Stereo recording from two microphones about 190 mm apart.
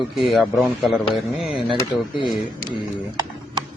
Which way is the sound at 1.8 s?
25° left (ahead or behind).